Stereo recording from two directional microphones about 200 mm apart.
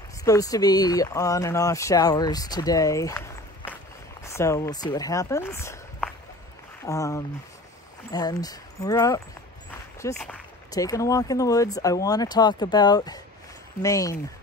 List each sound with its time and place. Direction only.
0.2 s speech: 15° left (ahead or behind)
10.1 s speech: 5° left (ahead or behind)
10.7 s speech: 15° left (ahead or behind)